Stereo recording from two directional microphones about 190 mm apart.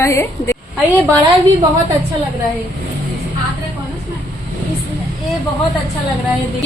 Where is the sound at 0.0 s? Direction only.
15° left (ahead or behind).